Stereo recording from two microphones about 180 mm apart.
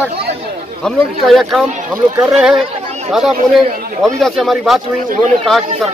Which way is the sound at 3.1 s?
Centre (ahead or behind).